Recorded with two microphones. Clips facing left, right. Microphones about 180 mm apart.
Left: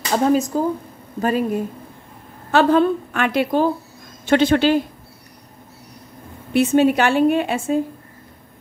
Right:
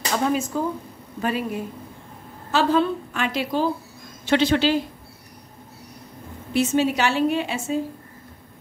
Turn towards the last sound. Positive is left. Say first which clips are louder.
# left 5 dB
turn(degrees=55)  # may be behind; listen again after turning